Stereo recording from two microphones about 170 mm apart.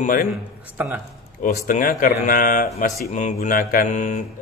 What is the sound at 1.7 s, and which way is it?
Speech, 50° left (ahead or behind).